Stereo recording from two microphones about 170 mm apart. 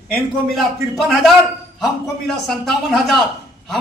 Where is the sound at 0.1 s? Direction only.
Centre (ahead or behind).